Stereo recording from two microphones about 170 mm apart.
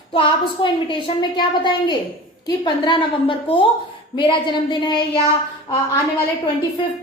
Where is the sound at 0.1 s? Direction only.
30° left (ahead or behind).